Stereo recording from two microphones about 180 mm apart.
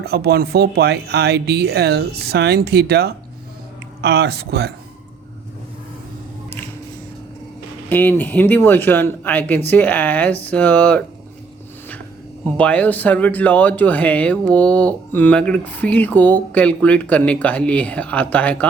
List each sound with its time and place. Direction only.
0.0 s speech: 60° right (ahead or behind)
7.9 s speech: 10° left (ahead or behind)
12.5 s speech: 10° left (ahead or behind)